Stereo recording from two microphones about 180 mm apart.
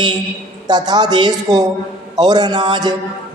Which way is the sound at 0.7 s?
25° right (ahead or behind).